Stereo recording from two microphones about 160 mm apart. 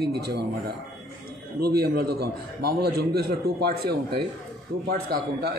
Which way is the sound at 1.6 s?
75° right (ahead or behind).